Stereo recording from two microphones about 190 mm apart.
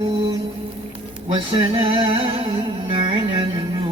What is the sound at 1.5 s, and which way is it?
Music, 25° right (ahead or behind).